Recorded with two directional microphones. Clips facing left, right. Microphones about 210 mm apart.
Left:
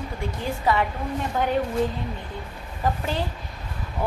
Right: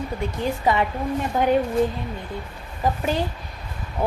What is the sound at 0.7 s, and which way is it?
Speech, 20° right (ahead or behind).